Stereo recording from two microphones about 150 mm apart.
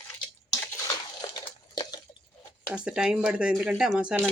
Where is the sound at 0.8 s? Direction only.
25° left (ahead or behind).